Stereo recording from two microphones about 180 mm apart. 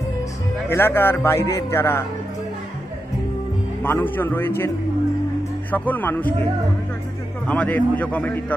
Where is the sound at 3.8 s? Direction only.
10° left (ahead or behind).